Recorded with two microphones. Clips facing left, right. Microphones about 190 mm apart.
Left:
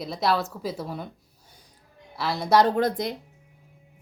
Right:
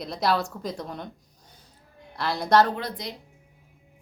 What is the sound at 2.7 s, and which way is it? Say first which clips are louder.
Speech: left 9 dB; 50° left (ahead or behind).